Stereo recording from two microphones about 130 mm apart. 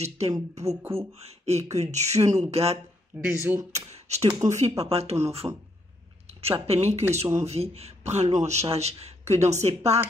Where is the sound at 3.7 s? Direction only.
55° right (ahead or behind).